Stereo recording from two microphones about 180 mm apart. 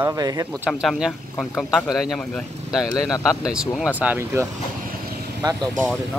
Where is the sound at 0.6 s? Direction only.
Centre (ahead or behind); by 5.7 s 20° right (ahead or behind).